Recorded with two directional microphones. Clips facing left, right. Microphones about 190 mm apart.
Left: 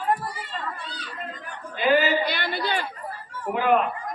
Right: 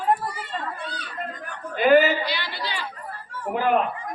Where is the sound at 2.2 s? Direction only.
50° left (ahead or behind).